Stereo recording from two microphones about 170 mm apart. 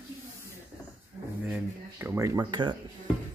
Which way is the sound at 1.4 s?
10° right (ahead or behind).